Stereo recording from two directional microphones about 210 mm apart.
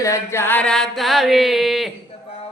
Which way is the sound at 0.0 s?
15° left (ahead or behind).